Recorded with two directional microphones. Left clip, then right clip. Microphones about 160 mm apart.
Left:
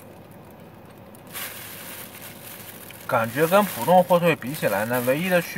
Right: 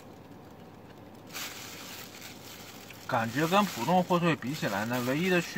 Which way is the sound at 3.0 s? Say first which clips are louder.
Left 8 dB; 15° left (ahead or behind).